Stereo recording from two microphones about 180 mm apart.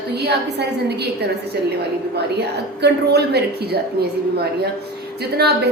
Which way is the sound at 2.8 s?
65° right (ahead or behind).